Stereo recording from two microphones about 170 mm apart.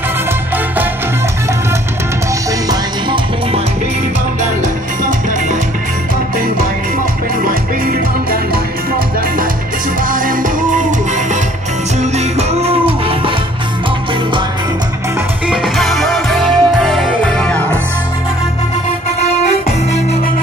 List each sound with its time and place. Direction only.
2.7 s music: 25° right (ahead or behind)
7.4 s music: 55° right (ahead or behind)
10.0 s music: 55° right (ahead or behind)
12.0 s music: 40° right (ahead or behind)
15.4 s music: 5° right (ahead or behind)